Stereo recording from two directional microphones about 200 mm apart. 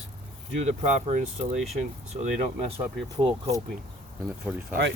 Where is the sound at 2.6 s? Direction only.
25° right (ahead or behind).